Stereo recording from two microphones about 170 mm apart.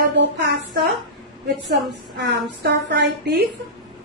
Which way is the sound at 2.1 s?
85° right.